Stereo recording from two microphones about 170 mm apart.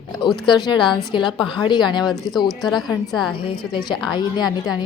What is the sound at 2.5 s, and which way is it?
Speech, centre (ahead or behind).